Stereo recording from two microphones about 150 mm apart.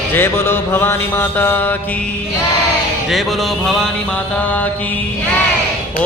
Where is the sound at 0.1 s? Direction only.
15° left (ahead or behind).